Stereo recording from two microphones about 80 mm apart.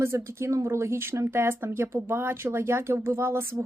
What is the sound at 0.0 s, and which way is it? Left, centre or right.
Speech, right.